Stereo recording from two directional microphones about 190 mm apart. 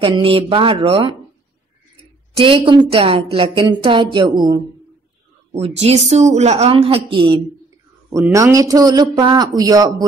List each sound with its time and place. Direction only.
0.0 s a woman's voice: 30° right (ahead or behind)
2.3 s a woman's voice: 30° right (ahead or behind)
5.8 s a woman's voice: 35° right (ahead or behind)